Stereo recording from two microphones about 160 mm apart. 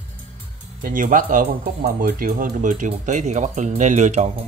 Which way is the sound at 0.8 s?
55° right (ahead or behind).